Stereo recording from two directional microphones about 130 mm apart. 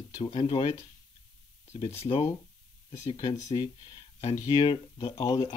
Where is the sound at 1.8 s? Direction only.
40° left (ahead or behind).